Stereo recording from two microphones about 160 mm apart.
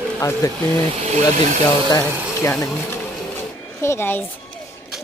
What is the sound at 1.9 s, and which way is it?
Speech, 20° left (ahead or behind).